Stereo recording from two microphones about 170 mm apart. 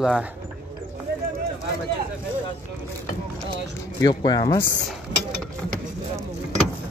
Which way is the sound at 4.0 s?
25° left (ahead or behind).